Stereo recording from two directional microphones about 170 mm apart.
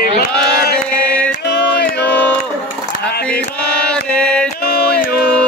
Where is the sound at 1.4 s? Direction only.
80° left.